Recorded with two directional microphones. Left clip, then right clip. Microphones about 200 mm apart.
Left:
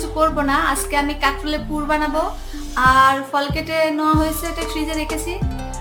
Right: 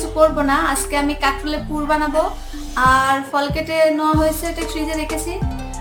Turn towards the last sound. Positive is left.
turn(degrees=-15)  # may be behind; listen again after turning